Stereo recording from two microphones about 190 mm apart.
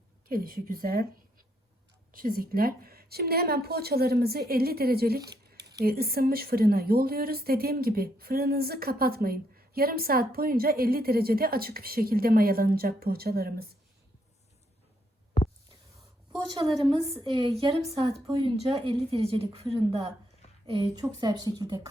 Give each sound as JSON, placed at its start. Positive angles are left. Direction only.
{"t": 0.3, "sound": "speech", "side_deg": -50}
{"t": 5.3, "sound": "a sound", "side_deg": -20}
{"t": 5.8, "sound": "speech", "side_deg": -55}
{"t": 17.2, "sound": "speech", "side_deg": -30}